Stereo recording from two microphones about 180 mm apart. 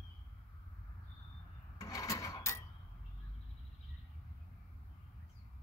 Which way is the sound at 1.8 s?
20° left (ahead or behind).